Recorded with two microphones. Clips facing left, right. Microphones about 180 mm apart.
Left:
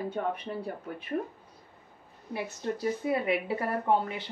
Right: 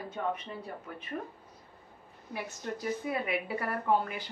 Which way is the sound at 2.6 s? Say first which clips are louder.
Left 4 dB; 30° left (ahead or behind).